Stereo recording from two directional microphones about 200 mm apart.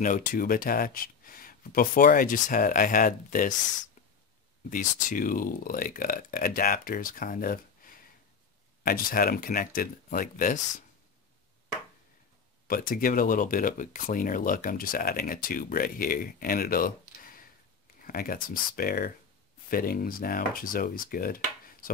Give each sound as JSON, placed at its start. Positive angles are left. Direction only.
{"t": 0.0, "sound": "speech", "side_deg": 40}
{"t": 4.6, "sound": "speech", "side_deg": 40}
{"t": 12.6, "sound": "speech", "side_deg": 45}